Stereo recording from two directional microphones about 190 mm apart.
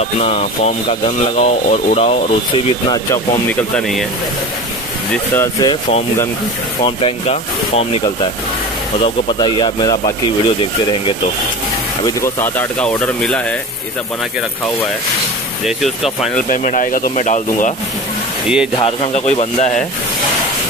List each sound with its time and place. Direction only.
0.2 s speech: 35° left (ahead or behind)
3.4 s speech: 5° left (ahead or behind)
5.1 s speech: 10° left (ahead or behind)
12.0 s speech: 15° left (ahead or behind)
15.6 s speech: centre (ahead or behind)
16.4 s speech: 45° left (ahead or behind)
18.9 s speech: 35° left (ahead or behind)